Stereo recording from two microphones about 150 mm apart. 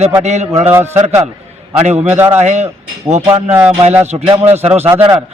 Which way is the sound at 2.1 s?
15° right (ahead or behind).